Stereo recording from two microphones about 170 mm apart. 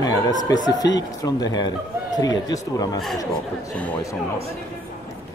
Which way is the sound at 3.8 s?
10° left (ahead or behind).